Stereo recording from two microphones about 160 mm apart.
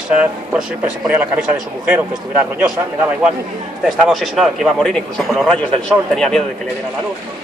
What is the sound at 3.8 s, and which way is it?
Speech, centre (ahead or behind).